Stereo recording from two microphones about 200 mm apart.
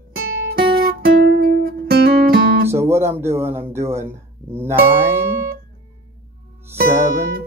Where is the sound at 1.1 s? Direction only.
55° right (ahead or behind).